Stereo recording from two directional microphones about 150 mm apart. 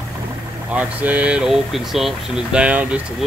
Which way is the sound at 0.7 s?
10° right (ahead or behind).